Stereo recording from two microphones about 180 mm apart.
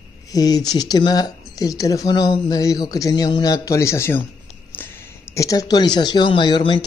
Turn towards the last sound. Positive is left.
turn(degrees=25)  # may be behind; listen again after turning